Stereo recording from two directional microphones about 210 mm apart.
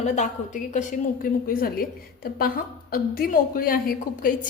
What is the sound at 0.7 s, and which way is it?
A woman's voice, 35° left (ahead or behind).